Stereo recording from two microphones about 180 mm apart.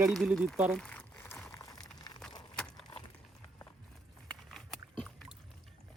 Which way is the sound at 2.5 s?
5° left (ahead or behind).